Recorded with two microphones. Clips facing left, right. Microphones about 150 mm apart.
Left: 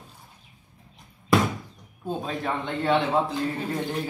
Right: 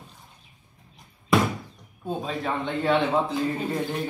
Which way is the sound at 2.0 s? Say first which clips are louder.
Even; centre (ahead or behind).